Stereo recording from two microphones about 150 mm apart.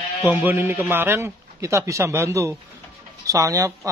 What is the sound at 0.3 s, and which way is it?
A man's voice, 10° right (ahead or behind).